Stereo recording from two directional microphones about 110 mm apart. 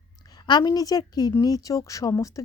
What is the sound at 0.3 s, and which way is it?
Speech, 40° left (ahead or behind).